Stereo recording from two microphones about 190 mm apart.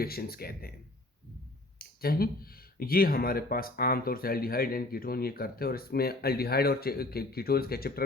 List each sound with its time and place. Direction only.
0.0 s speech: 55° left (ahead or behind)
1.8 s speech: 50° left (ahead or behind)